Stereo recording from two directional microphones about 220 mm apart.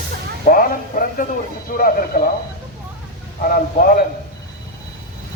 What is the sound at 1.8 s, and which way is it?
Speech, 40° left (ahead or behind).